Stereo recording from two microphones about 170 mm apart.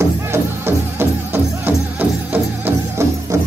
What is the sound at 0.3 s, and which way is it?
Music, 15° right (ahead or behind).